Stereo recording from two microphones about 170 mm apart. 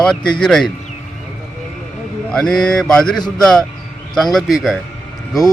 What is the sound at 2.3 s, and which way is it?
Speech, 5° left (ahead or behind).